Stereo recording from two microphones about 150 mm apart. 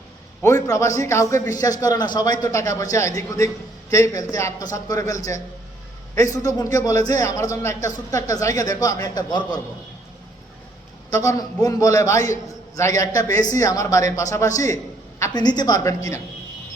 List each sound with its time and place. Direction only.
0.4 s a man's voice: 20° left (ahead or behind)
11.2 s a man's voice: 25° left (ahead or behind)